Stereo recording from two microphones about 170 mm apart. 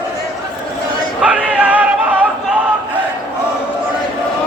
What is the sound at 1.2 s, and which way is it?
Music, 5° right (ahead or behind).